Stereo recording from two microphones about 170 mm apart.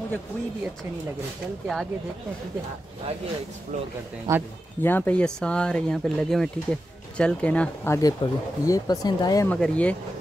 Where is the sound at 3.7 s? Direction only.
45° right (ahead or behind).